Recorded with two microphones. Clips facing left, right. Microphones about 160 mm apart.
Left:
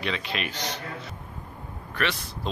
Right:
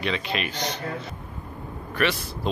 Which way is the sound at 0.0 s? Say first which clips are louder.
Right 3 dB; centre (ahead or behind).